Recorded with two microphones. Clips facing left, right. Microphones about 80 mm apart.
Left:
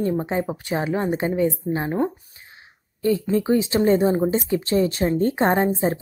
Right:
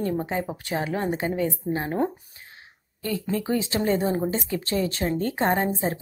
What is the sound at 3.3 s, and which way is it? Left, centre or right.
Speech, centre.